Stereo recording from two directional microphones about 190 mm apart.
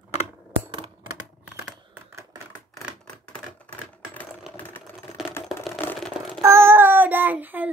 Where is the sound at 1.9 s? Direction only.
10° right (ahead or behind).